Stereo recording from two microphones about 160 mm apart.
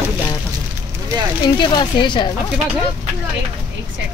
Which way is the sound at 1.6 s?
30° left (ahead or behind).